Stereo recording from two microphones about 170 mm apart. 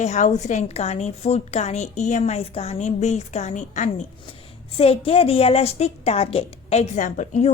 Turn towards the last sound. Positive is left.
turn(degrees=45)  # may be behind; listen again after turning